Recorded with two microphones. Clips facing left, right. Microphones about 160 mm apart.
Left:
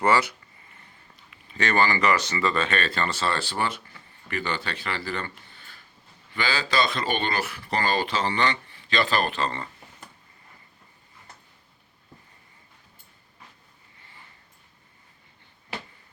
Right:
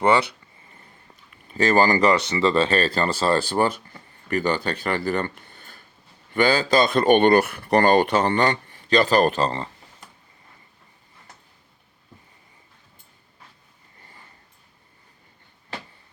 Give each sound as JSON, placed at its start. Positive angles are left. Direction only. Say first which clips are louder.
{"t": 1.6, "sound": "speech", "louder": "right 5 dB", "side_deg": -40}